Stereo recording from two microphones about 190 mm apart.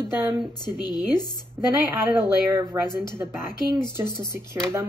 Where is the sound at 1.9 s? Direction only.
10° right (ahead or behind).